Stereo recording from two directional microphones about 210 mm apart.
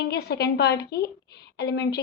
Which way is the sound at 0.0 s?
50° left (ahead or behind).